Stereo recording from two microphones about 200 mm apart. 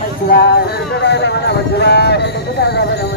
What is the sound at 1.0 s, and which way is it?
Speech, 55° left (ahead or behind).